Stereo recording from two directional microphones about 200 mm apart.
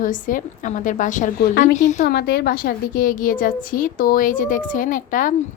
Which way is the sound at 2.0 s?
50° left (ahead or behind).